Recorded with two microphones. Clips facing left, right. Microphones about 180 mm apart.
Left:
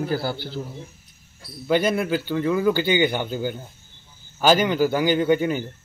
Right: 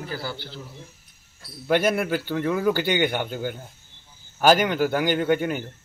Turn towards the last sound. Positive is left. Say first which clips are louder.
# left 3 dB
turn(degrees=0)  # may be behind; listen again after turning